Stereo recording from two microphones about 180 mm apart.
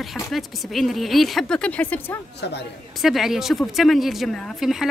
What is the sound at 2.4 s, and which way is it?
Speech, 75° left (ahead or behind).